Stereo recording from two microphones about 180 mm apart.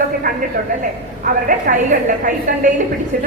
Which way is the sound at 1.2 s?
50° right (ahead or behind).